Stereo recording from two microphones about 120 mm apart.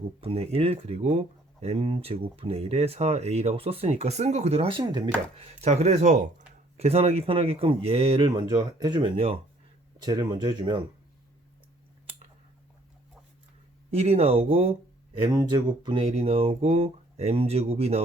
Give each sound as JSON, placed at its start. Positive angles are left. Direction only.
{"t": 0.2, "sound": "speech", "side_deg": -55}
{"t": 4.7, "sound": "speech", "side_deg": -40}
{"t": 5.4, "sound": "speech", "side_deg": -65}
{"t": 6.7, "sound": "speech", "side_deg": -60}
{"t": 10.0, "sound": "speech", "side_deg": -35}
{"t": 13.9, "sound": "speech", "side_deg": -60}
{"t": 15.3, "sound": "speech", "side_deg": -30}